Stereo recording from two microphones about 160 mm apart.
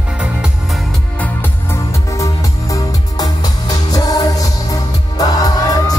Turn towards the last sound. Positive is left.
turn(degrees=25)  # may be behind; listen again after turning